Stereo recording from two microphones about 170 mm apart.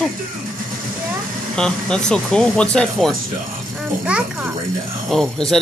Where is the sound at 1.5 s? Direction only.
5° left (ahead or behind).